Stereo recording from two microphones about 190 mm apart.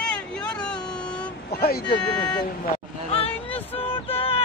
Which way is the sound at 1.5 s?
55° left (ahead or behind).